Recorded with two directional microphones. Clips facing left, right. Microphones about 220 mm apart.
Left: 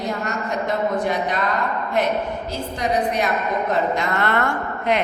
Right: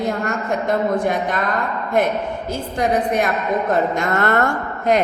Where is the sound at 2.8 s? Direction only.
50° right (ahead or behind).